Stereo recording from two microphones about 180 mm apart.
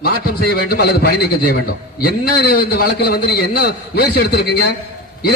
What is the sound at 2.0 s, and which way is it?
A man's voice, 60° left (ahead or behind).